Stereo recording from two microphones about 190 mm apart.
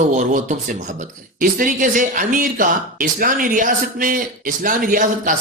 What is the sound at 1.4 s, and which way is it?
Speech, 45° right (ahead or behind).